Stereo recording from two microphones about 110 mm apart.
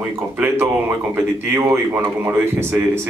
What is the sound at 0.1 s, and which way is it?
Speech, 20° right (ahead or behind).